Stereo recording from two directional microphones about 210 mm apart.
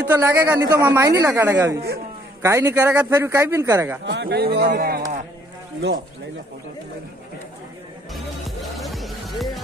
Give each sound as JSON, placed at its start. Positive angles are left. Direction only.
{"t": 0.0, "sound": "a man's voice", "side_deg": -15}
{"t": 4.0, "sound": "speech", "side_deg": -55}
{"t": 8.1, "sound": "music", "side_deg": 0}